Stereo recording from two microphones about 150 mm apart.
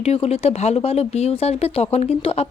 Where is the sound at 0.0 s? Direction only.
45° left (ahead or behind).